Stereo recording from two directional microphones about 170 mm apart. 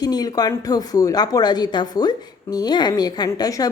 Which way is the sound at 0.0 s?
25° left (ahead or behind).